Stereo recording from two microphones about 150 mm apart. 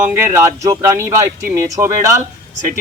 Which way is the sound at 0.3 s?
20° right (ahead or behind).